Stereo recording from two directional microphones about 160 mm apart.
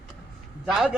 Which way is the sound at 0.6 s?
Centre (ahead or behind).